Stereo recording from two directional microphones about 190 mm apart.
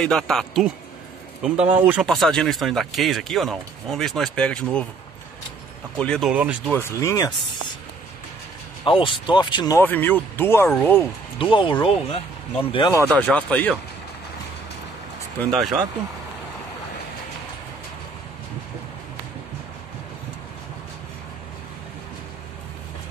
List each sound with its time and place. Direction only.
0.0 s a man's voice: 5° left (ahead or behind)
2.0 s a man's voice: centre (ahead or behind)
5.9 s a man's voice: 5° left (ahead or behind)
6.3 s speech: 10° right (ahead or behind)
6.7 s speech: 15° left (ahead or behind)
8.8 s speech: 25° left (ahead or behind)
9.8 s speech: 10° left (ahead or behind)
11.3 s speech: 25° left (ahead or behind)
13.1 s speech: 5° left (ahead or behind)
15.5 s a man's voice: centre (ahead or behind)